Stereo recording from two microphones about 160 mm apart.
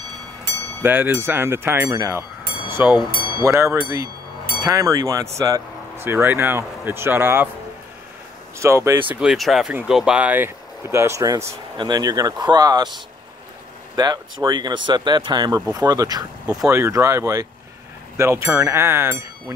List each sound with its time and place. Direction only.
0.8 s speech: 15° right (ahead or behind)
8.5 s speech: 15° right (ahead or behind)
9.1 s speech: 5° right (ahead or behind); by 12.9 s 25° right (ahead or behind)
13.9 s speech: 25° right (ahead or behind)